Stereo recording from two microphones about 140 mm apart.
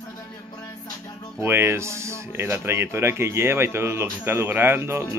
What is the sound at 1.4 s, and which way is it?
Speech, 20° right (ahead or behind).